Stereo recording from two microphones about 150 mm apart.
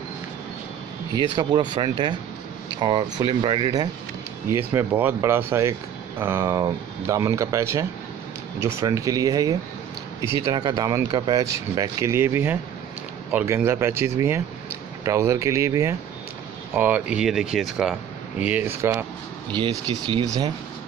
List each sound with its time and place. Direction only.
1.3 s speech: 30° right (ahead or behind)
4.5 s speech: 15° right (ahead or behind)
19.9 s speech: 35° right (ahead or behind)